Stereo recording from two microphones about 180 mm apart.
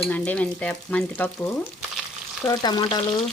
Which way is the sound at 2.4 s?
25° left (ahead or behind).